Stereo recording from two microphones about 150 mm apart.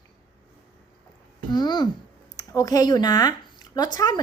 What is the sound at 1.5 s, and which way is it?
A woman's voice, 30° left (ahead or behind).